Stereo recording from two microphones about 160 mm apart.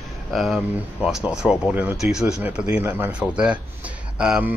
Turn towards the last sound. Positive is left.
turn(degrees=-5)  # may be behind; listen again after turning